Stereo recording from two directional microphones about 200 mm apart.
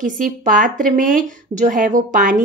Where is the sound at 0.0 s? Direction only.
40° right (ahead or behind).